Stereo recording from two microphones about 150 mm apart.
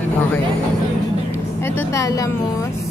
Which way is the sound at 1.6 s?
15° left (ahead or behind).